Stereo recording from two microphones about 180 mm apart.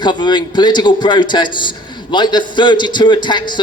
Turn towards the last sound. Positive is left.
turn(degrees=25)  # may be behind; listen again after turning